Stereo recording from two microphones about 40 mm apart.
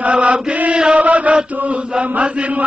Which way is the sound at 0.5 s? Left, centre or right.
Right.